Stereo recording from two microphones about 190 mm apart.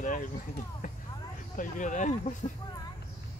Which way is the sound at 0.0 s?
45° left (ahead or behind).